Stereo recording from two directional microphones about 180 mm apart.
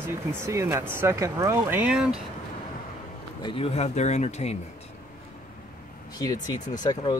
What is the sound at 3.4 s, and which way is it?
Speech, 30° left (ahead or behind).